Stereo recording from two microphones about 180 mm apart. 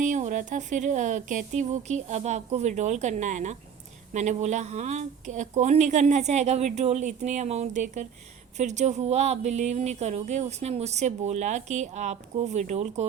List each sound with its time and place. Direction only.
0.0 s speech: 45° right (ahead or behind)